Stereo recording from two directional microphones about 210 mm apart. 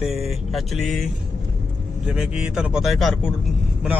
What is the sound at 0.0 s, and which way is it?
Speech, centre (ahead or behind).